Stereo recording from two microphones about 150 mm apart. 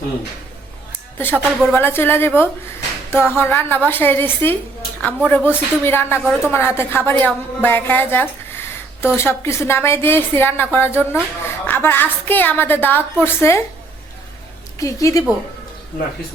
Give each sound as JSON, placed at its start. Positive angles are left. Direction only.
{"t": 1.2, "sound": "a woman's voice", "side_deg": 15}
{"t": 14.8, "sound": "a woman's voice", "side_deg": 20}